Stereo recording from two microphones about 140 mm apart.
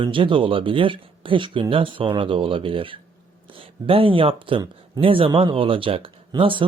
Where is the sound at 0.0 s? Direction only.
35° right (ahead or behind).